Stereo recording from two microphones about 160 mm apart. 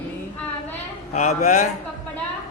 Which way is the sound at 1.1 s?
45° left (ahead or behind).